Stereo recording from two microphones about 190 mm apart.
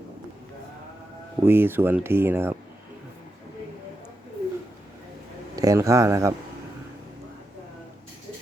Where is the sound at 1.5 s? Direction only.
10° right (ahead or behind).